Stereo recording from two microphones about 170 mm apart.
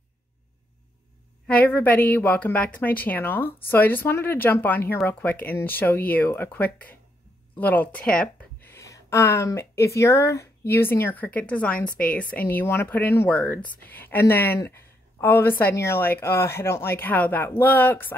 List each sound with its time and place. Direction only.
1.5 s speech: 10° left (ahead or behind)
8.7 s speech: 15° left (ahead or behind)